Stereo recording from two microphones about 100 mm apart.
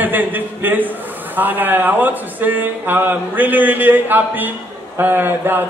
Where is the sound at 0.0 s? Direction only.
20° right (ahead or behind).